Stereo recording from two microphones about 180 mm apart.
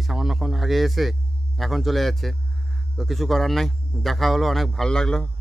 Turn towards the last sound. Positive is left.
turn(degrees=5)  # may be behind; listen again after turning